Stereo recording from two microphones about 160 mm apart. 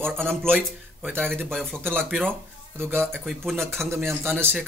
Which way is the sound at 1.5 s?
5° left (ahead or behind).